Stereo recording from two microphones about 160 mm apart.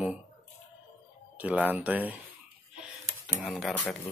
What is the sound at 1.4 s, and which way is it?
Speech, 10° right (ahead or behind).